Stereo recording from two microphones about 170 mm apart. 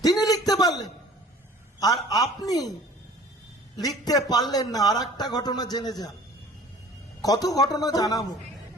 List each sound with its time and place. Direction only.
0.0 s a sound: 20° left (ahead or behind)
1.8 s a man's voice: 20° left (ahead or behind)
3.8 s a man's voice: 20° left (ahead or behind)
7.2 s a man's voice: 20° left (ahead or behind)